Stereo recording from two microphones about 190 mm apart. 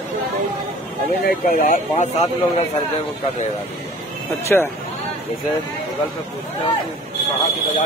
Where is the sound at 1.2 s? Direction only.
50° left (ahead or behind).